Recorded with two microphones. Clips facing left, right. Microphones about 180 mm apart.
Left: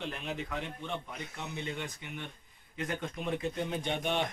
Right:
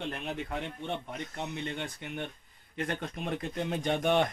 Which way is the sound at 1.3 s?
60° right (ahead or behind).